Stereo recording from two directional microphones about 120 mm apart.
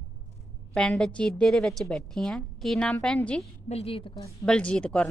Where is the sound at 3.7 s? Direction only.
55° left (ahead or behind).